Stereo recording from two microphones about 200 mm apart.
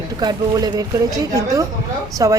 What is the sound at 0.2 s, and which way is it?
A child's voice, 20° right (ahead or behind).